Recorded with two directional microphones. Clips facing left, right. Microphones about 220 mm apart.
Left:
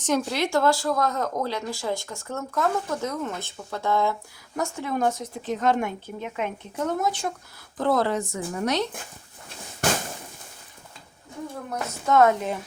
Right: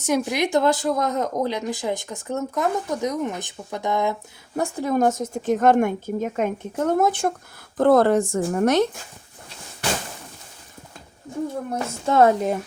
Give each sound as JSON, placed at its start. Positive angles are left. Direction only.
{"t": 0.0, "sound": "speech", "side_deg": -10}
{"t": 4.5, "sound": "speech", "side_deg": -35}
{"t": 9.8, "sound": "a sound", "side_deg": 45}
{"t": 11.7, "sound": "a woman's voice", "side_deg": -30}